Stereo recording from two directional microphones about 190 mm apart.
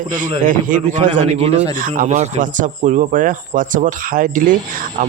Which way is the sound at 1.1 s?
30° right (ahead or behind).